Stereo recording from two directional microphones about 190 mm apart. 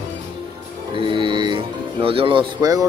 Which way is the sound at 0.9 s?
25° right (ahead or behind).